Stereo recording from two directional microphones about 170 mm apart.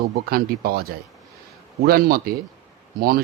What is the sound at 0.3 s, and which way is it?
A man's voice, 60° right (ahead or behind).